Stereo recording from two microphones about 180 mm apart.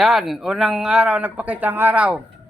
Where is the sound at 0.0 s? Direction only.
Centre (ahead or behind).